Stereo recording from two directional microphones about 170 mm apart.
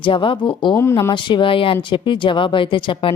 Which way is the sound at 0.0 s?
30° left (ahead or behind).